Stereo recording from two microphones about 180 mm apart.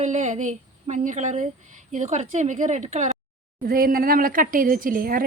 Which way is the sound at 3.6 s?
55° right (ahead or behind).